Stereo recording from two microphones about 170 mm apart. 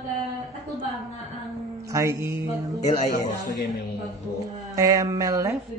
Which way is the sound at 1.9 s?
20° right (ahead or behind).